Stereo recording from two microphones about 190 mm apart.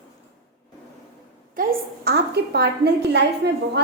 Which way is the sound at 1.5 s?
50° right (ahead or behind).